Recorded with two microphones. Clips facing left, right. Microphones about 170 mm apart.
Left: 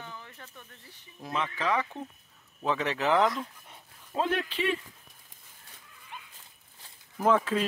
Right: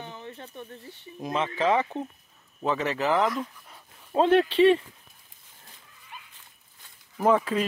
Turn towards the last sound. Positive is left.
turn(degrees=-5)  # may be behind; listen again after turning